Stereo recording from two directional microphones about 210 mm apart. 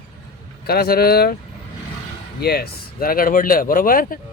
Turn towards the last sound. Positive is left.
turn(degrees=45)  # may be behind; listen again after turning